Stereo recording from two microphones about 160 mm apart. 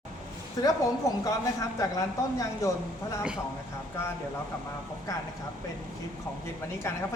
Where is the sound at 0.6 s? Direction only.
25° left (ahead or behind).